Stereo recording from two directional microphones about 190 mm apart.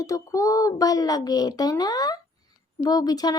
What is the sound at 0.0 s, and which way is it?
Speech, 15° left (ahead or behind).